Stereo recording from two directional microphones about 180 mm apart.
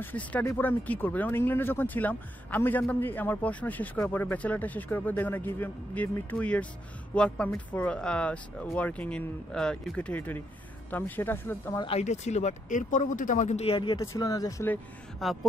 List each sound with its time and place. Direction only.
0.0 s speech: 10° left (ahead or behind)
11.8 s speech: 35° left (ahead or behind)
13.9 s speech: 15° left (ahead or behind)
15.2 s a sound: centre (ahead or behind)